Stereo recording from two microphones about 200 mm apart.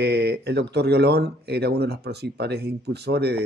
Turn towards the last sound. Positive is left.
turn(degrees=-55)  # may be behind; listen again after turning